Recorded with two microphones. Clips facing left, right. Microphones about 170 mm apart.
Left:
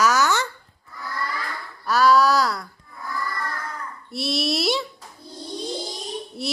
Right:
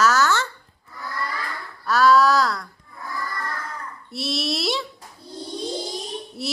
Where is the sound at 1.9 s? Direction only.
Centre (ahead or behind).